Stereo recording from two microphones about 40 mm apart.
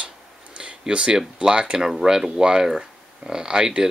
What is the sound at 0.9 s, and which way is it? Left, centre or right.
Speech, right.